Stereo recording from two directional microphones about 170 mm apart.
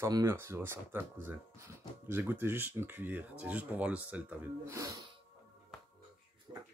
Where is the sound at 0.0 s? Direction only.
15° right (ahead or behind).